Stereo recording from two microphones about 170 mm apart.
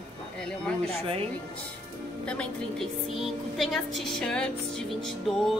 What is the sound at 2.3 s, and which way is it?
A woman's voice, 5° left (ahead or behind).